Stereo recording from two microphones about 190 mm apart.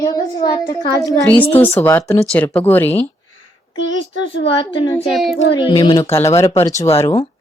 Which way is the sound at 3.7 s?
75° left (ahead or behind).